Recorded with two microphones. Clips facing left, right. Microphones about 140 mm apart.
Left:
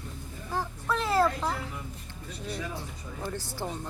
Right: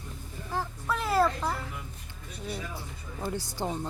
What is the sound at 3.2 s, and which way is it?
Speech, 15° right (ahead or behind).